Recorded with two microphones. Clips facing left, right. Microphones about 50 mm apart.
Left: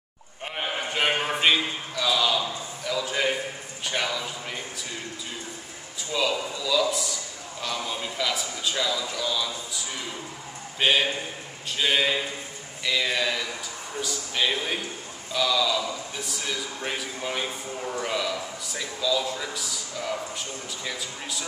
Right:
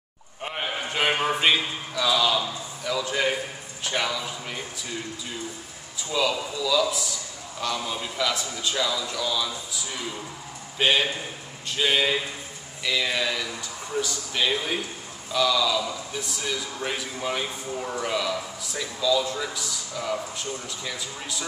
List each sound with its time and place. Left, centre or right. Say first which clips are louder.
0.4 s a sound: even; centre
1.2 s a man's voice: right 1 dB; centre
5.9 s speech: right 1 dB; centre